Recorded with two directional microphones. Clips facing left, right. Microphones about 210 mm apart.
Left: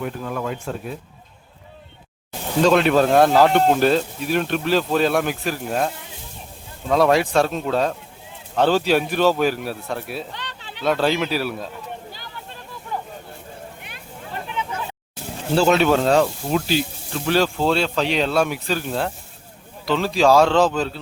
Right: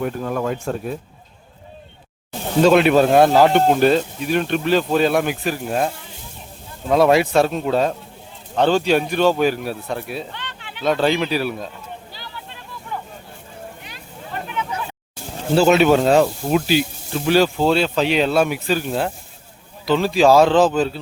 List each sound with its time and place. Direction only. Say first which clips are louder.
0.0 s speech: right 4 dB; 45° right (ahead or behind)
2.6 s speech: right 3 dB; 5° right (ahead or behind)
6.9 s speech: right 2 dB; 5° right (ahead or behind)
10.3 s a sound: even; 35° left (ahead or behind)
10.8 s speech: right 2 dB; centre (ahead or behind)
12.9 s vehicle: left 1 dB; 40° left (ahead or behind)
15.5 s speech: right 3 dB; 5° right (ahead or behind)